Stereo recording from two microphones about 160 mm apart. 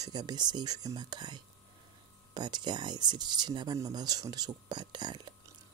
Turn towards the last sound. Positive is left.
turn(degrees=-30)  # may be behind; listen again after turning